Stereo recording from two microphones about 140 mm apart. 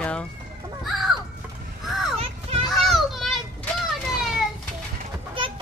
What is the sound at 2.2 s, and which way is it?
Children playing, 45° right (ahead or behind).